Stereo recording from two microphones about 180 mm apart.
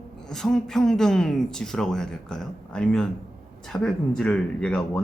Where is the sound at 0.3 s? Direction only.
5° left (ahead or behind).